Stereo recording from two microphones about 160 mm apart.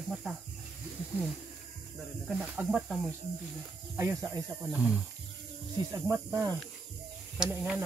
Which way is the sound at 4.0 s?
15° right (ahead or behind).